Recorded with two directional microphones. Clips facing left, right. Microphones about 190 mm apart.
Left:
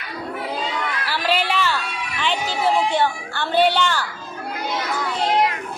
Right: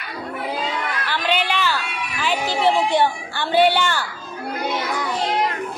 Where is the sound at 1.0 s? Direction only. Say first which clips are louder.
Even; 5° left (ahead or behind).